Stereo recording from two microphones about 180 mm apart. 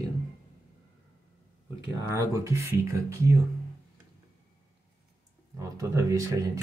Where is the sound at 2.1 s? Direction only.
15° right (ahead or behind).